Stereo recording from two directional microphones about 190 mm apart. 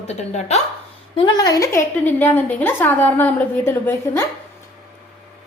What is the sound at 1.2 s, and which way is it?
A woman's voice, 25° left (ahead or behind).